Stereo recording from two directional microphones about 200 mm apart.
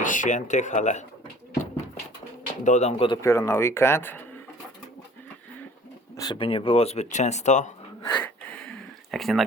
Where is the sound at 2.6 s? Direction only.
35° left (ahead or behind).